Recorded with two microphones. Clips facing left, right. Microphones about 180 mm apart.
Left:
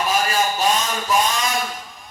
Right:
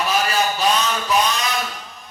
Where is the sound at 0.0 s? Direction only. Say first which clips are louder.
Even; 45° left (ahead or behind).